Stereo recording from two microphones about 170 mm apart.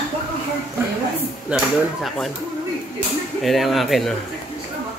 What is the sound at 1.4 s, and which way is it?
Speech, centre (ahead or behind).